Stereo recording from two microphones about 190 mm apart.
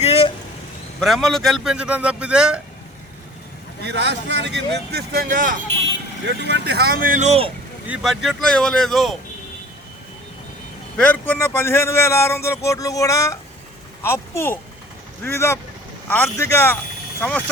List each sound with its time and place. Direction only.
0.0 s vehicle: 30° left (ahead or behind)
0.9 s speech: centre (ahead or behind)
3.8 s speech: 65° right (ahead or behind); by 5.5 s 45° right (ahead or behind)
6.5 s speech: 60° right (ahead or behind); by 7.5 s 35° right (ahead or behind)
7.9 s speech: centre (ahead or behind)
10.9 s a man's voice: 5° left (ahead or behind)